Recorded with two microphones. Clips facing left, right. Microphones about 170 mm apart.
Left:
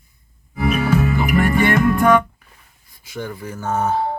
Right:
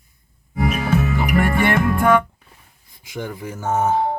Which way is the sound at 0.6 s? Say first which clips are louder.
Left 3 dB; 60° left (ahead or behind).